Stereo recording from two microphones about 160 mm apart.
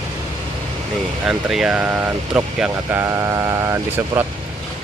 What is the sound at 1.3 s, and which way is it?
Speech, 5° right (ahead or behind).